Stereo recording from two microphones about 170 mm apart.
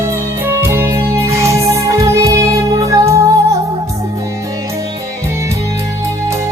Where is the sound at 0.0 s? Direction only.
15° right (ahead or behind).